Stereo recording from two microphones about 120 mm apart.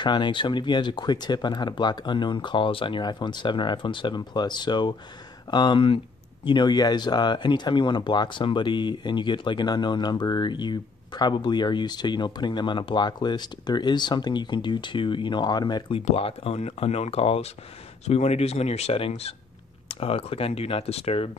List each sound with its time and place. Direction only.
0.0 s speech: 40° left (ahead or behind)
16.1 s speech: 55° left (ahead or behind)